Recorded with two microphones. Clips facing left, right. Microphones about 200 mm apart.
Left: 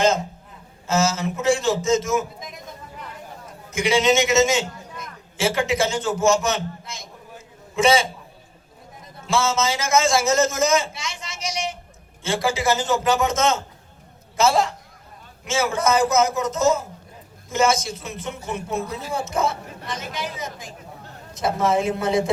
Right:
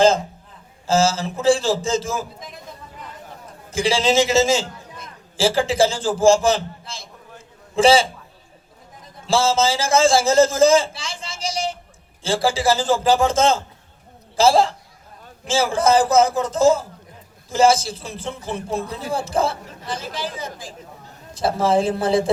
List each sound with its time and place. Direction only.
0.9 s a man's voice: 30° right (ahead or behind)
3.7 s a man's voice: 30° right (ahead or behind)
9.2 s a man's voice: 30° right (ahead or behind)